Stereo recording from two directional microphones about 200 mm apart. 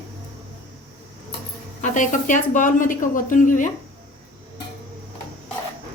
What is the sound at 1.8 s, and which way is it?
A woman's voice, 40° left (ahead or behind).